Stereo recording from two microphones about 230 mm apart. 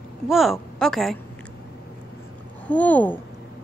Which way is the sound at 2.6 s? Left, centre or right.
Centre.